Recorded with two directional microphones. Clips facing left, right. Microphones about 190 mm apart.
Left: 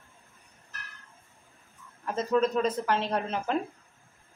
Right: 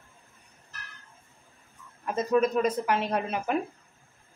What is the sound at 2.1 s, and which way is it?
A woman's voice, 10° right (ahead or behind).